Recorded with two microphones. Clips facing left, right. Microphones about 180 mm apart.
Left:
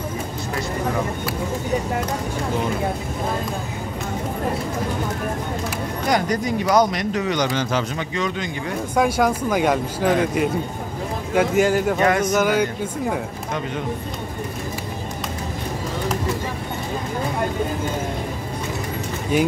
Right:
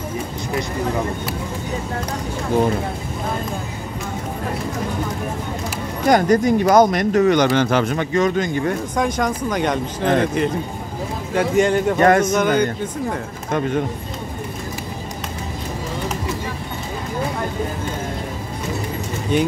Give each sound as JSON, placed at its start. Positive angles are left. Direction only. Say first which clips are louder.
{"t": 6.0, "sound": "speech", "louder": "right 7 dB", "side_deg": -50}
{"t": 8.9, "sound": "speech", "louder": "left 2 dB", "side_deg": 5}
{"t": 12.0, "sound": "speech", "louder": "right 7 dB", "side_deg": -50}
{"t": 12.3, "sound": "speech", "louder": "right 1 dB", "side_deg": 5}